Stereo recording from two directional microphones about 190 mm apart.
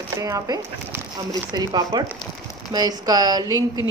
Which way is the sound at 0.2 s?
15° right (ahead or behind).